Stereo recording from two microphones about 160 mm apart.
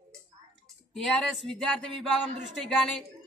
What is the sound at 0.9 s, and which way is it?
A man's voice, centre (ahead or behind).